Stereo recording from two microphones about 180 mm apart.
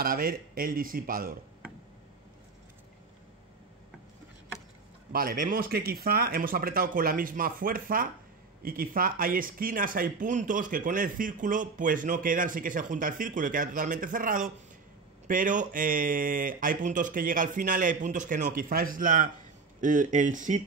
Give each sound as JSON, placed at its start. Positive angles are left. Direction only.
{"t": 0.0, "sound": "speech", "side_deg": -55}
{"t": 5.1, "sound": "speech", "side_deg": -50}